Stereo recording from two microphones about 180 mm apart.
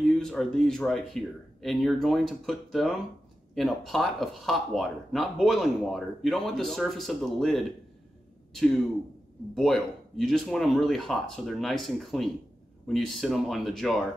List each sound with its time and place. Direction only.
0.0 s speech: centre (ahead or behind)
9.6 s speech: centre (ahead or behind)